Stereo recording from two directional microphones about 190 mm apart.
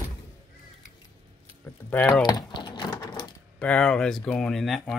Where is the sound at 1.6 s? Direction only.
10° left (ahead or behind).